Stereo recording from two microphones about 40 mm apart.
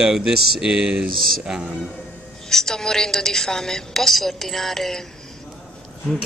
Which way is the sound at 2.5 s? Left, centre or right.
Centre.